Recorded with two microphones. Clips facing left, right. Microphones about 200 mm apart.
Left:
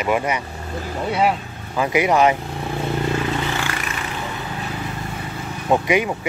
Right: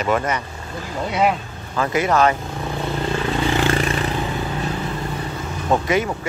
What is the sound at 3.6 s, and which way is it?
Vehicle, 30° right (ahead or behind).